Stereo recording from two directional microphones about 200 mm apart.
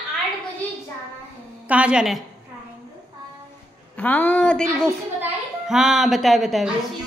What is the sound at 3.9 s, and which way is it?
A woman's voice, 10° left (ahead or behind).